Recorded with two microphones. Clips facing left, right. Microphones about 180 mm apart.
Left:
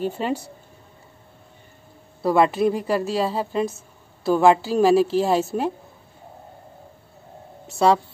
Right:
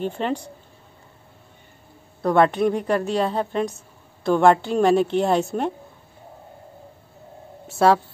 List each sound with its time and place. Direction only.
0.0 s speech: 5° left (ahead or behind)
2.2 s a woman's voice: 5° left (ahead or behind)
7.6 s speech: centre (ahead or behind)